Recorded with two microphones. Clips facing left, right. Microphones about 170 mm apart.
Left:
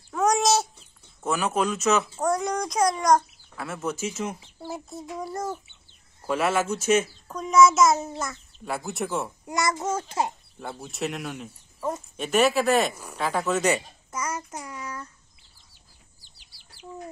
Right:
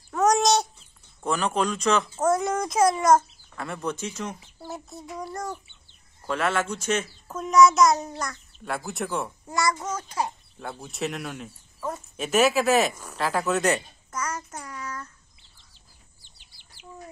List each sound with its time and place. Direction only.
0.1 s a sound: centre (ahead or behind)
1.2 s a child's voice: 5° left (ahead or behind)
9.5 s a child's voice: 20° left (ahead or behind)
10.6 s speech: centre (ahead or behind)
12.9 s a child's voice: 10° left (ahead or behind)
13.2 s a child's voice: centre (ahead or behind)